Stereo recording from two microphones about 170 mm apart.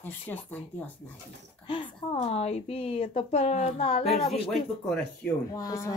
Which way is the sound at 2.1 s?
40° left (ahead or behind).